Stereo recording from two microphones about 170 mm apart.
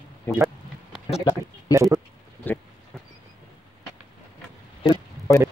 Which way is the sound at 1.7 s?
20° right (ahead or behind).